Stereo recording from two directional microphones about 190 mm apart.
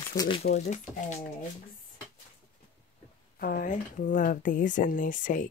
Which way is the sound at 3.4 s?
45° left (ahead or behind).